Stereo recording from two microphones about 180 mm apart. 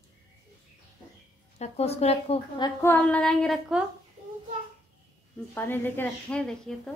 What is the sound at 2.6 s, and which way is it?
A woman's voice, 10° left (ahead or behind).